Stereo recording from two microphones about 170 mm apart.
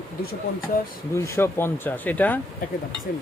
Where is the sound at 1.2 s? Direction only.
15° left (ahead or behind).